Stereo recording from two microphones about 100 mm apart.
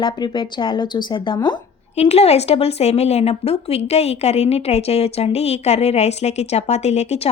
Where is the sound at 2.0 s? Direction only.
90° left.